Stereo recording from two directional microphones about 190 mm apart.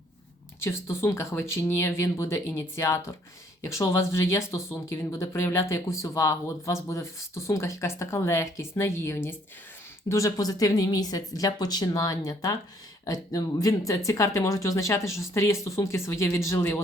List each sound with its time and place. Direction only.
0.6 s speech: 15° left (ahead or behind)